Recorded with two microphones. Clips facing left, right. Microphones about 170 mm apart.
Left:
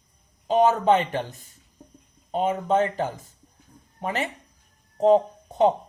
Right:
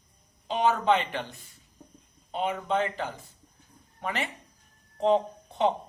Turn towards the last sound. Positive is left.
turn(degrees=40)  # may be behind; listen again after turning